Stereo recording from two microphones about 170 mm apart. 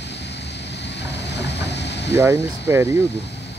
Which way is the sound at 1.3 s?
90° left.